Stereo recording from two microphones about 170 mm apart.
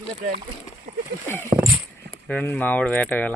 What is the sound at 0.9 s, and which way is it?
Speech, 45° right (ahead or behind).